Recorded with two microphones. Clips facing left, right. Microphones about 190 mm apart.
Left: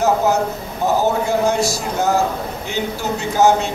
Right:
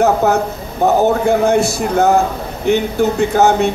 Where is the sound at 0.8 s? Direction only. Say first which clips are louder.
Right 5 dB; 60° right (ahead or behind).